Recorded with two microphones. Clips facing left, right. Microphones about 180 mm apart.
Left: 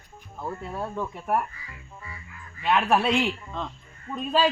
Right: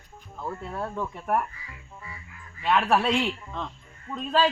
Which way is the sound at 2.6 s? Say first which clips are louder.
Even; 5° left (ahead or behind).